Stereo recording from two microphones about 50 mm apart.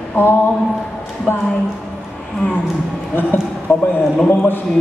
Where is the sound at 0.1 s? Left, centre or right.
Left.